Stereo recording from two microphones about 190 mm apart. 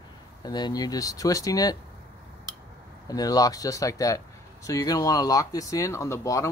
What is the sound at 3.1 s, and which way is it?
Speech, 20° left (ahead or behind).